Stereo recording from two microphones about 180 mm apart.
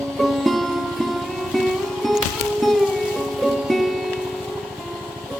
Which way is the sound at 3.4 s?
Centre (ahead or behind).